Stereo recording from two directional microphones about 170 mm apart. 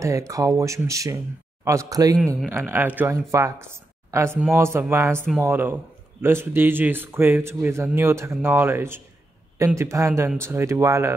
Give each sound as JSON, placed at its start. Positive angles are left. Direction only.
{"t": 0.0, "sound": "speech", "side_deg": -20}
{"t": 2.1, "sound": "speech", "side_deg": 5}
{"t": 2.5, "sound": "a man's voice", "side_deg": -10}